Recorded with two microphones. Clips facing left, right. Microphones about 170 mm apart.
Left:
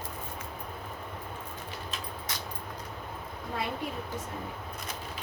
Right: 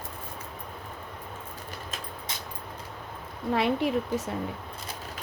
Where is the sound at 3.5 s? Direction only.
80° right.